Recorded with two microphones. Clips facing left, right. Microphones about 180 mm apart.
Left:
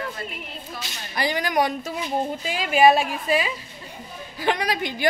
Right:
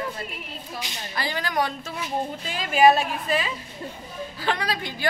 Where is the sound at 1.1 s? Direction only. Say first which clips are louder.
Left 5 dB; 15° left (ahead or behind).